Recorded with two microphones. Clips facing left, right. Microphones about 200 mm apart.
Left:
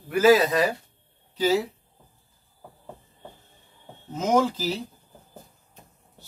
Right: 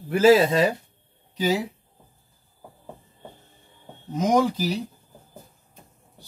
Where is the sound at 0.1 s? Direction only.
25° right (ahead or behind).